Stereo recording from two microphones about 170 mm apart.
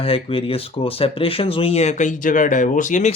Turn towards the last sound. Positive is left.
turn(degrees=45)  # may be behind; listen again after turning